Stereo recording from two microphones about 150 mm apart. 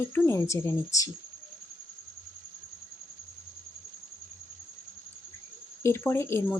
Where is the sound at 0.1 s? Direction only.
20° left (ahead or behind).